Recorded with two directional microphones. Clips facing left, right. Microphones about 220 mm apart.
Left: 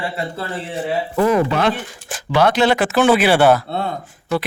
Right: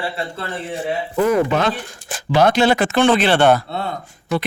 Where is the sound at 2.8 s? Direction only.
5° left (ahead or behind).